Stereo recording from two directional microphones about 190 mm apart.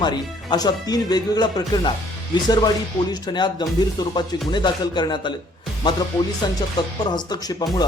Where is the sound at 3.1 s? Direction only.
20° left (ahead or behind).